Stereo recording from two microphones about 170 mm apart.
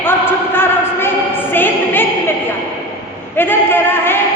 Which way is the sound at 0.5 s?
15° left (ahead or behind).